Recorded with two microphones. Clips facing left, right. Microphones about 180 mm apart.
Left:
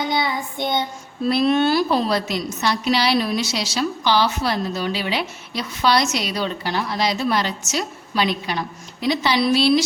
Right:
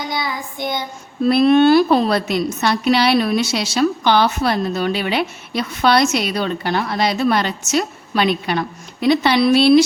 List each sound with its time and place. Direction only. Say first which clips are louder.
0.1 s child singing: left 2 dB; 25° left (ahead or behind)
1.3 s a woman's voice: right 6 dB; 60° right (ahead or behind)